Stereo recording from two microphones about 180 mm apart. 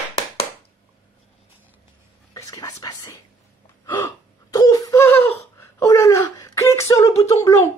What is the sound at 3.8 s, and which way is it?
Gasp, 20° left (ahead or behind).